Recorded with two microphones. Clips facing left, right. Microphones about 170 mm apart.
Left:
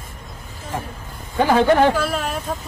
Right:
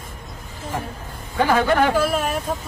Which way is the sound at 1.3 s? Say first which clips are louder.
Left 3 dB; 20° left (ahead or behind).